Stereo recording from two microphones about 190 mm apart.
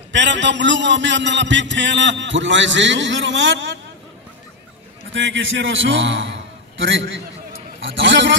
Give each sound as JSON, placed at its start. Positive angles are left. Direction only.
{"t": 0.1, "sound": "a man's voice", "side_deg": -70}
{"t": 5.1, "sound": "a man's voice", "side_deg": -75}